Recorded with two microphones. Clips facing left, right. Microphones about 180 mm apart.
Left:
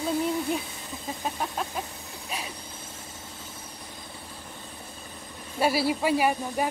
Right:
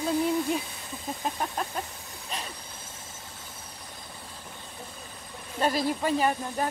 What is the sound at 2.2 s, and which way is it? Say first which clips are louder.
Vehicle: left 1 dB; 10° left (ahead or behind).